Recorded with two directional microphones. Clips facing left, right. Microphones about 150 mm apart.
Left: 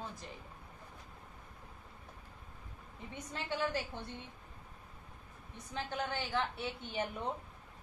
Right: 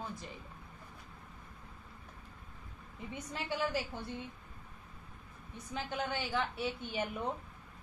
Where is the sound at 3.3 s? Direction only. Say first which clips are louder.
Right 1 dB; 10° right (ahead or behind).